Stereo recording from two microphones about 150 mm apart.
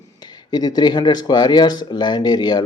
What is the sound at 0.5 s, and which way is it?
Speech, 25° left (ahead or behind).